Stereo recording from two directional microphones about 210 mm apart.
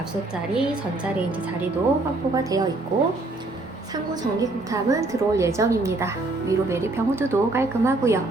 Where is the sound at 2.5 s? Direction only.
15° right (ahead or behind).